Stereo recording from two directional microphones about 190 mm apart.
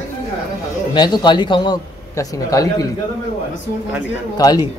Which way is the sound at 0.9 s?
25° left (ahead or behind).